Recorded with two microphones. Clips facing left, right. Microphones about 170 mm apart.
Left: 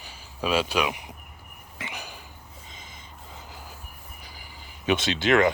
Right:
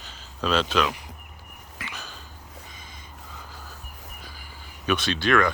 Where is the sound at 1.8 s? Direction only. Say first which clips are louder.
Left 2 dB; 15° left (ahead or behind).